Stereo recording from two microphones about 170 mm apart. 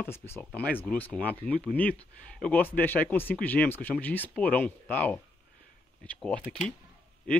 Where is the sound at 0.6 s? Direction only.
10° left (ahead or behind).